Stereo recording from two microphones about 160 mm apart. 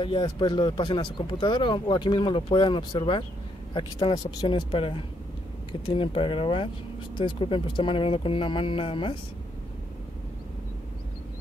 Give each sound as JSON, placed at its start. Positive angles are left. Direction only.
{"t": 0.0, "sound": "speech", "side_deg": 30}